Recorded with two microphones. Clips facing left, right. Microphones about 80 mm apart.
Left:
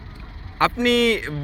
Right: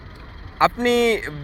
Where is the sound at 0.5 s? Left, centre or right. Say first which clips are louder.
Right 1 dB; right.